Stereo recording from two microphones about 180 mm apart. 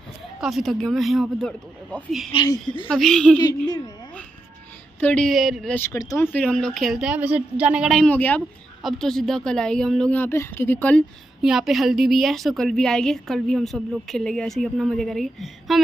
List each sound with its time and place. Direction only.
0.4 s a woman's voice: centre (ahead or behind)
2.3 s speech: 20° left (ahead or behind)
2.9 s a woman's voice: 5° left (ahead or behind)
3.6 s speech: 20° left (ahead or behind)
5.0 s a woman's voice: 5° left (ahead or behind)
5.8 s a woman's voice: 15° left (ahead or behind)
11.4 s a woman's voice: centre (ahead or behind)